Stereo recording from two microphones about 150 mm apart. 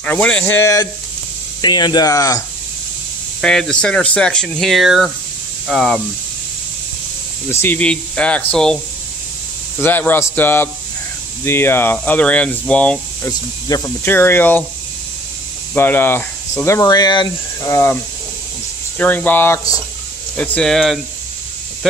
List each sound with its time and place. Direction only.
0.0 s speech: 10° left (ahead or behind)
1.6 s speech: 30° left (ahead or behind)
3.3 s speech: 5° left (ahead or behind)
7.6 s speech: 10° left (ahead or behind)
9.8 s speech: 15° left (ahead or behind)
13.3 s speech: 25° left (ahead or behind)
14.0 s speech: 15° left (ahead or behind)
15.7 s speech: 15° left (ahead or behind)
18.9 s speech: 10° left (ahead or behind)